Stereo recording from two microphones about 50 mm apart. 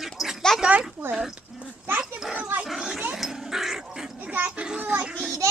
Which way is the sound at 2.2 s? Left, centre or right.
Centre.